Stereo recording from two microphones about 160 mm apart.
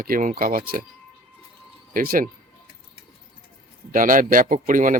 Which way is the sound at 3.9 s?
60° right (ahead or behind).